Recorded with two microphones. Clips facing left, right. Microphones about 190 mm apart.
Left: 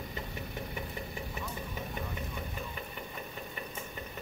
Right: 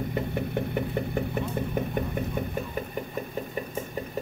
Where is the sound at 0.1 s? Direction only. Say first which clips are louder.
Right 12 dB; 60° right (ahead or behind).